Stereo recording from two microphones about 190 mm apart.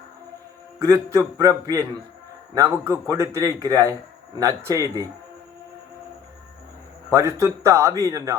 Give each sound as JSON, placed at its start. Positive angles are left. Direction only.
{"t": 0.8, "sound": "speech", "side_deg": -15}
{"t": 7.1, "sound": "speech", "side_deg": -15}